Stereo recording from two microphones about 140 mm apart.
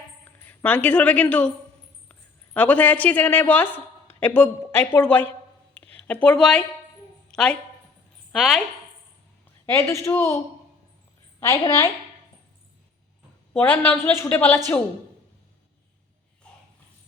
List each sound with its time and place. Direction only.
0.4 s a woman's voice: 10° left (ahead or behind)
7.3 s a sound: 5° left (ahead or behind)
8.3 s speech: centre (ahead or behind)
9.6 s speech: 20° left (ahead or behind)
13.5 s a woman's voice: 10° left (ahead or behind)